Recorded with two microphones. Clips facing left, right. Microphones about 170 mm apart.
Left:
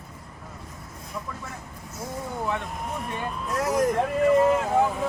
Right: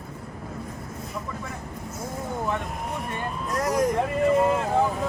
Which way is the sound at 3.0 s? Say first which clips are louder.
Right 1 dB; centre (ahead or behind).